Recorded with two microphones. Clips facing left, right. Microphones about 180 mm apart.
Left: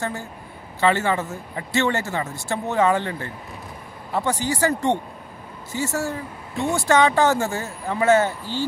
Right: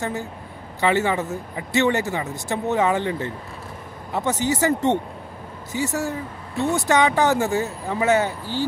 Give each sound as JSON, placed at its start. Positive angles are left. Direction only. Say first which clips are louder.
{"t": 0.7, "sound": "speech", "louder": "even", "side_deg": -15}